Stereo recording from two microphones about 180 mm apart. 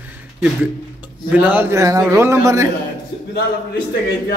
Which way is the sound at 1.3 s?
10° right (ahead or behind).